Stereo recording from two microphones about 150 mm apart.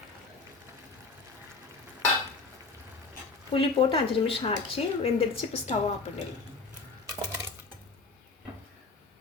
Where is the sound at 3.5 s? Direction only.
35° left (ahead or behind).